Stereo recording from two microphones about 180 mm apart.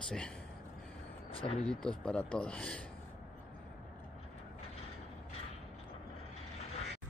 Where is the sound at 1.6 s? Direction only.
5° left (ahead or behind).